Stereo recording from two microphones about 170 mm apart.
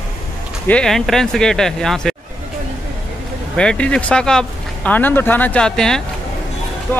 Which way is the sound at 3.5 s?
5° left (ahead or behind).